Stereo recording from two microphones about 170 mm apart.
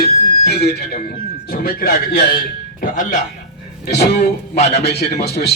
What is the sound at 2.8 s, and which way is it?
Speech, 50° left (ahead or behind).